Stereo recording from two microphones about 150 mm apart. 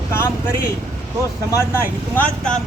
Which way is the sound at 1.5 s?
15° left (ahead or behind).